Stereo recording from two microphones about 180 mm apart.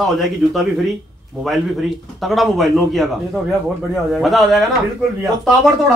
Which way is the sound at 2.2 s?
Centre (ahead or behind).